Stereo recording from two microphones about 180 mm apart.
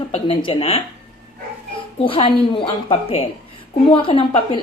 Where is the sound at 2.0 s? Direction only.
30° left (ahead or behind).